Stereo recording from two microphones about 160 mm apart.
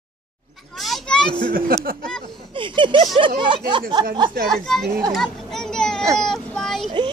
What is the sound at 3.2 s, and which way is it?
Speech, 30° right (ahead or behind).